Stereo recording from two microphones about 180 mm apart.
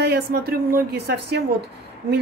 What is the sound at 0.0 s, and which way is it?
Speech, 60° right (ahead or behind).